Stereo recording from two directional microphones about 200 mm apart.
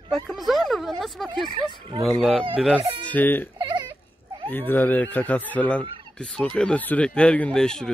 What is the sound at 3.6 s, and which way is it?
Baby cry, 20° right (ahead or behind).